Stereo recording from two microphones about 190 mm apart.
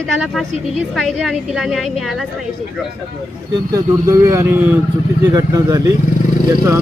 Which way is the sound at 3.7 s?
15° right (ahead or behind).